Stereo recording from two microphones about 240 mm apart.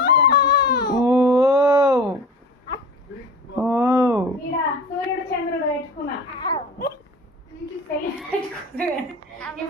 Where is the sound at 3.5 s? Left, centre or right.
Centre.